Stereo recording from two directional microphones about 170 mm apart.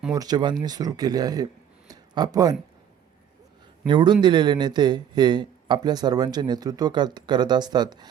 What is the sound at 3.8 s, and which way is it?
A man's voice, 25° right (ahead or behind).